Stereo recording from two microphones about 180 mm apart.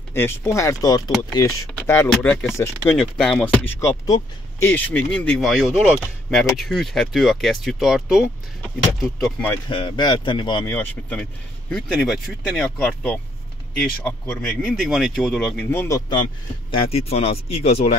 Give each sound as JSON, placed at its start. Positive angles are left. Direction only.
{"t": 0.1, "sound": "speech", "side_deg": 15}
{"t": 3.5, "sound": "speech", "side_deg": 15}
{"t": 9.7, "sound": "speech", "side_deg": 30}
{"t": 10.7, "sound": "speech", "side_deg": 10}
{"t": 16.7, "sound": "speech", "side_deg": 35}